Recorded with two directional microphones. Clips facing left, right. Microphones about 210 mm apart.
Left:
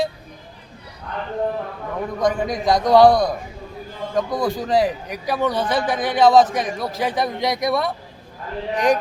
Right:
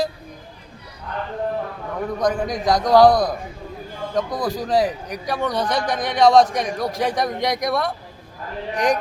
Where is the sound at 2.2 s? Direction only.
Centre (ahead or behind).